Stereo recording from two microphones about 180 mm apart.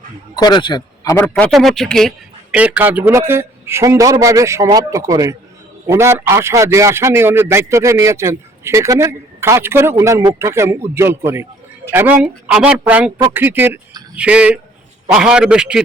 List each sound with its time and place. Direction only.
0.3 s a man's voice: 25° left (ahead or behind)
1.1 s a man's voice: 10° left (ahead or behind); by 15.8 s 5° right (ahead or behind)